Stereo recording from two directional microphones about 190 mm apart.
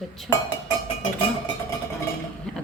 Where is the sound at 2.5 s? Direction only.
5° left (ahead or behind).